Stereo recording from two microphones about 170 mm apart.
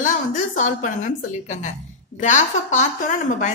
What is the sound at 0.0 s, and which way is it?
A woman's voice, 50° left (ahead or behind).